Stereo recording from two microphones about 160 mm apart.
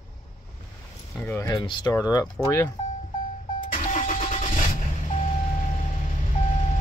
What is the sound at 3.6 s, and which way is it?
Vehicle, 55° left (ahead or behind).